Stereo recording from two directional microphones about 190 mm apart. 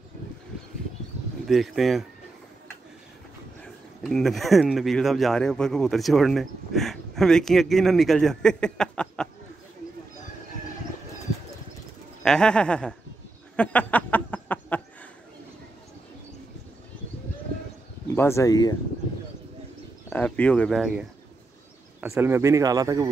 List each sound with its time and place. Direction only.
1.5 s speech: centre (ahead or behind)
3.6 s speech: 5° left (ahead or behind)
12.2 s speech: 5° left (ahead or behind)
13.6 s a sound: 10° left (ahead or behind)
18.1 s speech: 15° left (ahead or behind)
20.1 s speech: 5° left (ahead or behind)
22.1 s speech: 15° right (ahead or behind)